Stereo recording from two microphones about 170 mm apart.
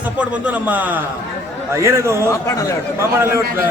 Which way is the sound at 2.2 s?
20° left (ahead or behind).